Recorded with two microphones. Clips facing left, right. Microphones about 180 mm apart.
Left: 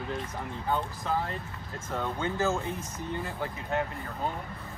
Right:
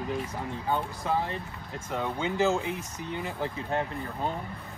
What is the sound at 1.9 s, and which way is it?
Speech, 15° right (ahead or behind).